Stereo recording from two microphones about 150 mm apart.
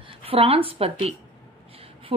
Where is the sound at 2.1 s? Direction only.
35° right (ahead or behind).